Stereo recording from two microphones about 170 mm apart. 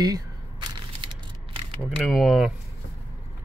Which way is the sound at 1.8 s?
5° right (ahead or behind).